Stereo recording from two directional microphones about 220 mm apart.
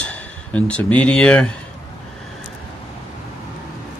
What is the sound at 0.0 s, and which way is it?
Speech, 5° left (ahead or behind).